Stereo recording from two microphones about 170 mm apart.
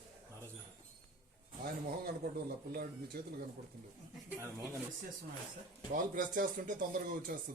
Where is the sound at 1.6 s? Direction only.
60° right (ahead or behind).